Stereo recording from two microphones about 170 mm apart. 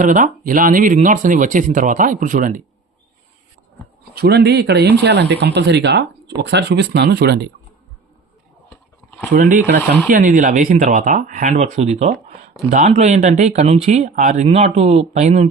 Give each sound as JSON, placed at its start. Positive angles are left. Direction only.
{"t": 0.0, "sound": "speech", "side_deg": -50}
{"t": 4.1, "sound": "speech", "side_deg": -70}
{"t": 9.0, "sound": "a sound", "side_deg": 10}
{"t": 9.3, "sound": "speech", "side_deg": -50}